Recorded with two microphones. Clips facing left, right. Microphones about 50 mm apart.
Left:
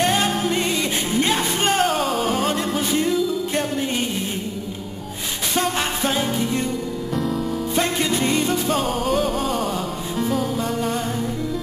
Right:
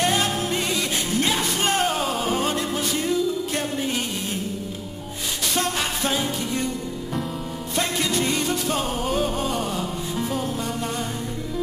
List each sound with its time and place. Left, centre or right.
0.0 s music: centre
2.5 s music: centre
5.6 s music: centre
7.7 s music: centre
9.0 s music: centre